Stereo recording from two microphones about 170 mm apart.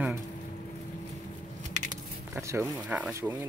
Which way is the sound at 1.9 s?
15° right (ahead or behind).